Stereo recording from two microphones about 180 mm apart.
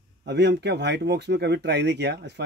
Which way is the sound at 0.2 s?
70° right (ahead or behind).